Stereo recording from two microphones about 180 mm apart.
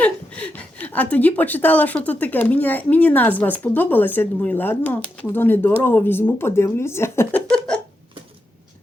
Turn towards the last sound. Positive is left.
turn(degrees=5)  # may be behind; listen again after turning